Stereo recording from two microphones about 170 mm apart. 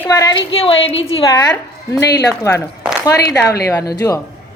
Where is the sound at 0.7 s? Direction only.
90° left.